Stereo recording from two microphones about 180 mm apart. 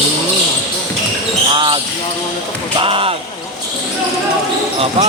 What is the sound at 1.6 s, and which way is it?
Speech, 30° right (ahead or behind).